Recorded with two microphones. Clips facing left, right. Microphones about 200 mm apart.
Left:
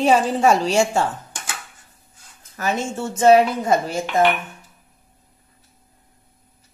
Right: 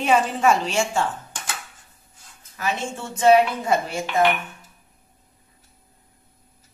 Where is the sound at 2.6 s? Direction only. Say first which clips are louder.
Left 4 dB; 45° left (ahead or behind).